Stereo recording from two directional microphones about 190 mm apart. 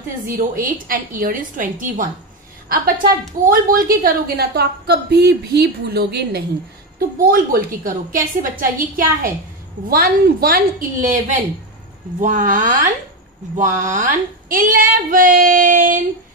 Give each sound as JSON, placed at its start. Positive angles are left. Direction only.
{"t": 0.3, "sound": "child singing", "side_deg": -50}
{"t": 4.0, "sound": "a woman's voice", "side_deg": -55}
{"t": 7.2, "sound": "child singing", "side_deg": -50}
{"t": 12.2, "sound": "speech", "side_deg": -40}
{"t": 13.6, "sound": "child singing", "side_deg": -40}